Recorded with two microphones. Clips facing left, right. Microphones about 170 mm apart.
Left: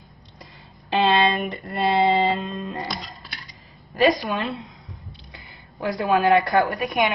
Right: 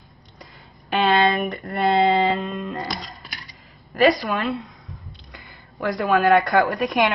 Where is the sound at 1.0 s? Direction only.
20° left (ahead or behind).